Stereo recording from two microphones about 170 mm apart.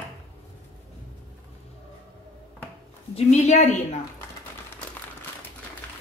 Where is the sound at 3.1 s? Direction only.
40° left (ahead or behind).